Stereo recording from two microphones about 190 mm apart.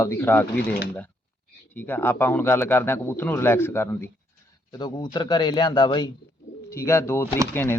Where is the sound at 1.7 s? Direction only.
10° left (ahead or behind).